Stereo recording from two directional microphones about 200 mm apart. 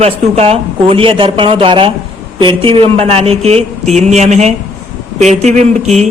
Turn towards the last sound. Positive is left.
turn(degrees=-35)  # may be behind; listen again after turning